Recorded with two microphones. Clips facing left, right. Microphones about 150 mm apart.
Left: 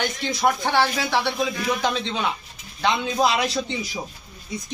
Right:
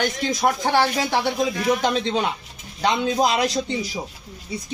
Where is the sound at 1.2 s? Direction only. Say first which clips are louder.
Right 3 dB; 40° right (ahead or behind).